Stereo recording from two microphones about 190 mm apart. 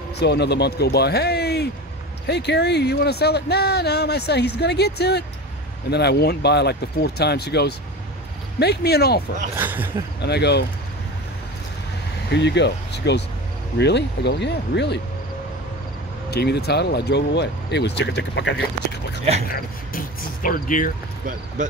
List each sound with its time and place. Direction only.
0.2 s speech: 60° left (ahead or behind)
9.6 s speech: 10° right (ahead or behind)
10.2 s speech: 60° left (ahead or behind)
12.3 s speech: 65° left (ahead or behind)
16.3 s speech: 60° left (ahead or behind)
19.4 s speech: 50° left (ahead or behind)
21.6 s speech: 40° right (ahead or behind)